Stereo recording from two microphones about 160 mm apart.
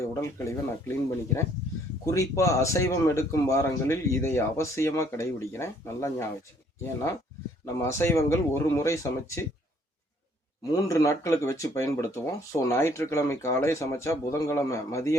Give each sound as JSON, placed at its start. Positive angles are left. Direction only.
{"t": 0.0, "sound": "speech", "side_deg": 20}
{"t": 7.6, "sound": "speech", "side_deg": 20}
{"t": 10.8, "sound": "speech", "side_deg": 20}